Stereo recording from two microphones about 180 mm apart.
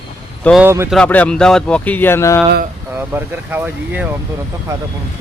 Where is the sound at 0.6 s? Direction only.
15° right (ahead or behind).